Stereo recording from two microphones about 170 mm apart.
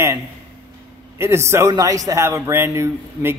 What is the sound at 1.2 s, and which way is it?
Speech, 15° right (ahead or behind).